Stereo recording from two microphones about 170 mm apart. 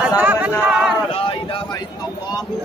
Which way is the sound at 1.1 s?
30° left (ahead or behind).